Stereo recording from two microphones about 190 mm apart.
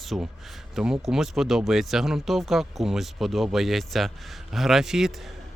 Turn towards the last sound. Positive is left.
turn(degrees=0)  # may be behind; listen again after turning